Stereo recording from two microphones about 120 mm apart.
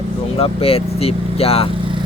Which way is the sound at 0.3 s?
55° left (ahead or behind).